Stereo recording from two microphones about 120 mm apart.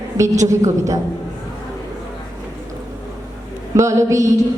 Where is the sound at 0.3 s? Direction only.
25° right (ahead or behind).